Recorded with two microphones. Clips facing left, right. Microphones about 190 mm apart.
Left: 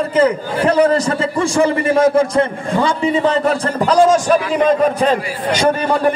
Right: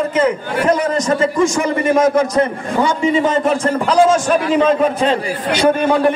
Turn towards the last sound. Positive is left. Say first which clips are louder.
# even
turn(degrees=35)  # may be behind; listen again after turning